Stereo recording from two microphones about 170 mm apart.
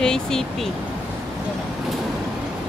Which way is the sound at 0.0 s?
5° left (ahead or behind).